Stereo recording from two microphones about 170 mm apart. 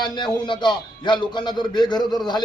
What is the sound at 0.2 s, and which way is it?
A man's voice, 25° left (ahead or behind).